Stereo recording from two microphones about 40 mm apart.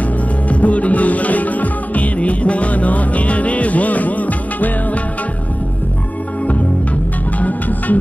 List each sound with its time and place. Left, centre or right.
0.5 s music: left
7.3 s music: left